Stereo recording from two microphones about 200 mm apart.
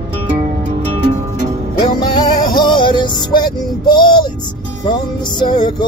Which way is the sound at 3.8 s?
20° left (ahead or behind).